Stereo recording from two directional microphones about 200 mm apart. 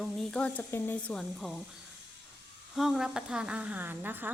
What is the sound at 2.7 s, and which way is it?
A woman's voice, centre (ahead or behind).